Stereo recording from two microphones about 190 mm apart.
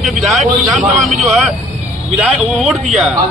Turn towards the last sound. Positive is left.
turn(degrees=0)  # may be behind; listen again after turning